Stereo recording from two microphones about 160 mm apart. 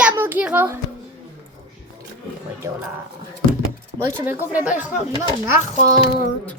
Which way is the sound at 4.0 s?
15° right (ahead or behind).